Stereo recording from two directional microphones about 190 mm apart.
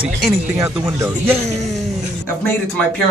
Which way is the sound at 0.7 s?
5° right (ahead or behind).